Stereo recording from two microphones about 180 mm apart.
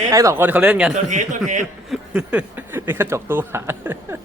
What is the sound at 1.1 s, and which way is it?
Speech, 45° right (ahead or behind).